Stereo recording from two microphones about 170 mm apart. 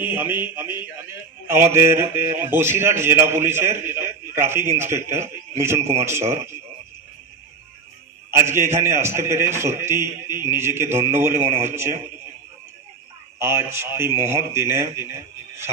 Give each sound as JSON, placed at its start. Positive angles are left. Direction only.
{"t": 0.0, "sound": "speech", "side_deg": -15}
{"t": 8.3, "sound": "speech", "side_deg": -15}
{"t": 13.4, "sound": "speech", "side_deg": -15}